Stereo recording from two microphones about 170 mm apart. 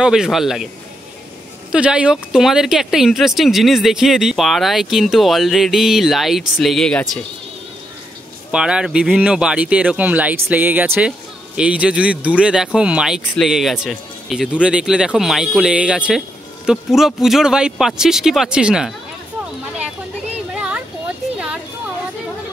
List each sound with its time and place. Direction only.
0.0 s speech: 5° right (ahead or behind)
1.7 s speech: 5° right (ahead or behind)
8.5 s speech: 5° right (ahead or behind)
20.5 s a sound: 5° right (ahead or behind)